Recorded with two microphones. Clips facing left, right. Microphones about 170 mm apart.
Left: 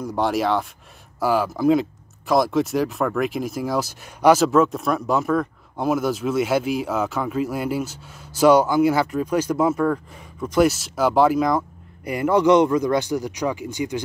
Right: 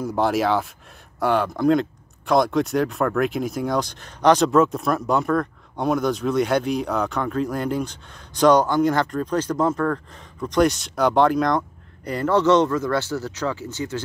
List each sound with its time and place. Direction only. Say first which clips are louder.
0.0 s speech: right 1 dB; centre (ahead or behind)